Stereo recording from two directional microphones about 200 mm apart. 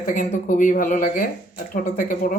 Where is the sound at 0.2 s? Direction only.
40° left (ahead or behind).